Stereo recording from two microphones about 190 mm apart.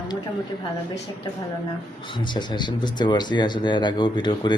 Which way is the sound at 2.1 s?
25° left (ahead or behind).